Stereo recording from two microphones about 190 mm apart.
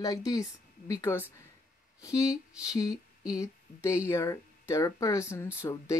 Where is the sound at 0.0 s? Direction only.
20° left (ahead or behind).